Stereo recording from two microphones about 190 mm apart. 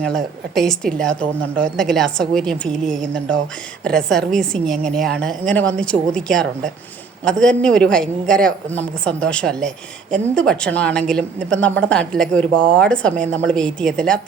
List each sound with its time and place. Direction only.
0.0 s a woman's voice: centre (ahead or behind)